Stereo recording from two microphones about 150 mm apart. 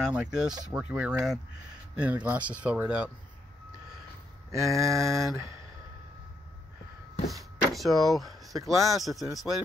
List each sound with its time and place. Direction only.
0.0 s speech: 5° right (ahead or behind)
4.5 s a sound: 20° right (ahead or behind)
7.7 s speech: centre (ahead or behind)